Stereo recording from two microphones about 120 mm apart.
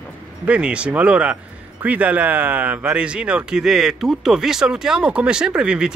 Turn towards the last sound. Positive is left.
turn(degrees=-5)  # may be behind; listen again after turning